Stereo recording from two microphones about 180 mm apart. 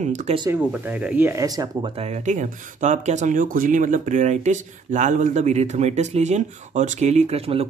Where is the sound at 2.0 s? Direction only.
40° right (ahead or behind).